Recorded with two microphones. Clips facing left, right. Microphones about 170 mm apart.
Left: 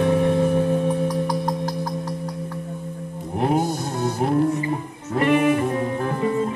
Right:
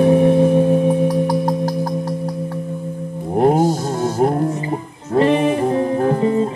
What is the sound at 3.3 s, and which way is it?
Music, 45° right (ahead or behind).